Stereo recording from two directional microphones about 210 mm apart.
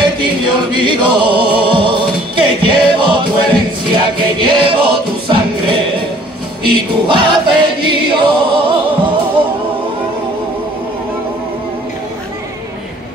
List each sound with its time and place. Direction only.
0.0 s music: 20° right (ahead or behind)
6.7 s choir: 20° right (ahead or behind)